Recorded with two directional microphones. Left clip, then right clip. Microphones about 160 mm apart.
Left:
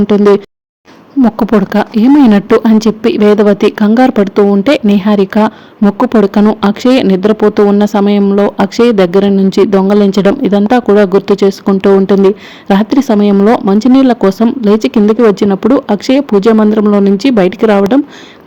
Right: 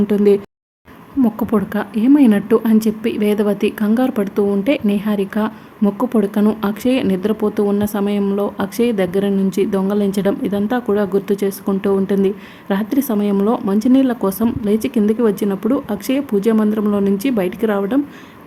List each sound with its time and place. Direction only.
0.1 s a woman's voice: 25° left (ahead or behind)